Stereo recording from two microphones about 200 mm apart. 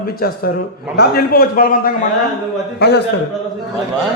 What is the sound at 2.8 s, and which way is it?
Speech, 55° left (ahead or behind).